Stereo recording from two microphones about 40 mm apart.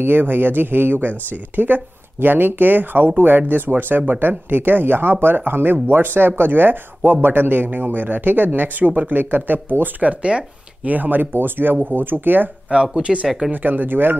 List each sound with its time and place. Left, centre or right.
0.0 s speech: right
10.0 s speech: right
10.9 s speech: right
11.3 s speech: right
12.7 s speech: right
13.5 s speech: right